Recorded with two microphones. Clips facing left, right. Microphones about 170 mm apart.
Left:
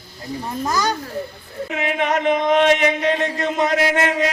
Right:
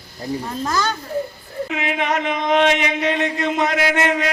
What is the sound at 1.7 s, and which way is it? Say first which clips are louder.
A man's voice: left 2 dB; 50° left (ahead or behind).